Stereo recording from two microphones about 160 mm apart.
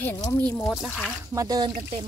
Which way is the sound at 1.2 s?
20° right (ahead or behind).